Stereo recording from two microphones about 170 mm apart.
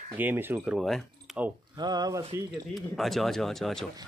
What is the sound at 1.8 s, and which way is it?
Speech, 25° right (ahead or behind).